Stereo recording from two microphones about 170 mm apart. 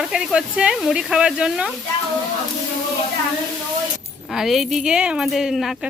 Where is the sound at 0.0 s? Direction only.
Centre (ahead or behind).